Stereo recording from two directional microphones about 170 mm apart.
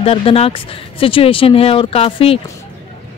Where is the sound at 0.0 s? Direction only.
35° left (ahead or behind).